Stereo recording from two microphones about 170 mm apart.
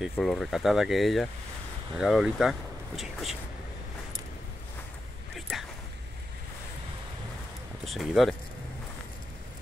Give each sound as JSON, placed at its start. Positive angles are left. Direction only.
{"t": 0.0, "sound": "speech", "side_deg": 0}
{"t": 5.3, "sound": "a sound", "side_deg": 0}
{"t": 7.8, "sound": "speech", "side_deg": 0}